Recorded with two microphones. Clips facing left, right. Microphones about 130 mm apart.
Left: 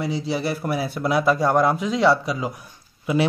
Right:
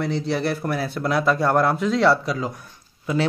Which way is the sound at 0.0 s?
5° left (ahead or behind).